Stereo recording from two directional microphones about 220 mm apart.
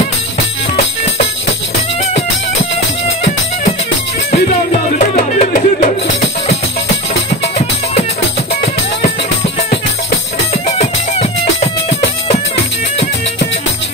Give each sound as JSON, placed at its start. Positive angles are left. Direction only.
{"t": 4.3, "sound": "music", "side_deg": 35}
{"t": 10.8, "sound": "music", "side_deg": 30}